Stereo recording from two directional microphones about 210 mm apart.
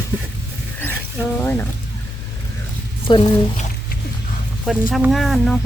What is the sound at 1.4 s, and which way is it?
Speech, 10° left (ahead or behind).